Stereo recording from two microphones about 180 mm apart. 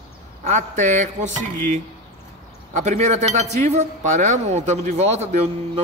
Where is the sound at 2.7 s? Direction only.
40° right (ahead or behind).